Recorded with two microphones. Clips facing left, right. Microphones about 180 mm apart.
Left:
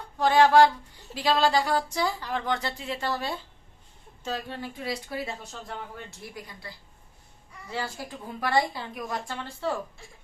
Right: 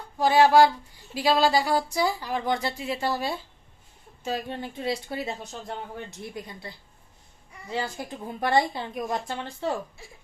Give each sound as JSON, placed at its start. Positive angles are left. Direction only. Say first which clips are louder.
{"t": 0.2, "sound": "a woman's voice", "louder": "right 1 dB", "side_deg": -10}